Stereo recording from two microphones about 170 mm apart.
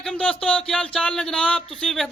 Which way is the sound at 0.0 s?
5° left (ahead or behind).